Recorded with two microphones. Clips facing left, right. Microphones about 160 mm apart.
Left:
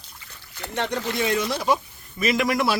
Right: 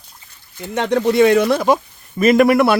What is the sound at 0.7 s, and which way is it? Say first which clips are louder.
Speech: right 11 dB; 75° right (ahead or behind).